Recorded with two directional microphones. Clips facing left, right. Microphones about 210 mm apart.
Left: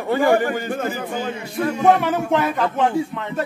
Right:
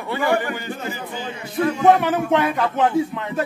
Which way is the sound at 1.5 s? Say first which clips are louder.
Right 1 dB; centre (ahead or behind).